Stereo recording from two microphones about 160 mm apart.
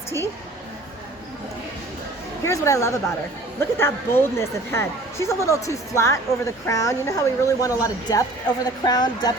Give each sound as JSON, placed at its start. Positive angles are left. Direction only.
{"t": 2.4, "sound": "a woman's voice", "side_deg": 20}